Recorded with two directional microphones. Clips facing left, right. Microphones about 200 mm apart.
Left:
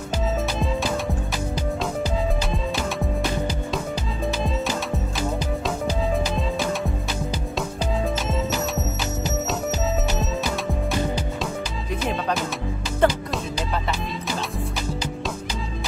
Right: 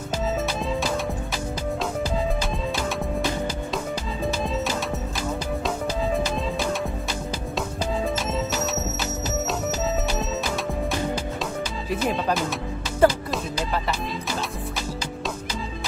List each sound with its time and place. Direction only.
6.1 s music: centre (ahead or behind)
8.3 s music: centre (ahead or behind)
11.9 s music: 5° right (ahead or behind)